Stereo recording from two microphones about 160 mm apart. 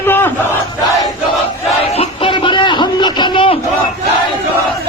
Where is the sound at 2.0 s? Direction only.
30° left (ahead or behind).